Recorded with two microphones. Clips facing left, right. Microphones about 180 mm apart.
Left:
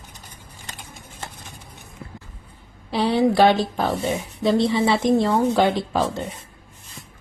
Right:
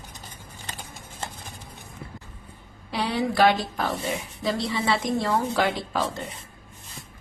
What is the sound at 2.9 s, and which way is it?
A woman's voice, 30° left (ahead or behind).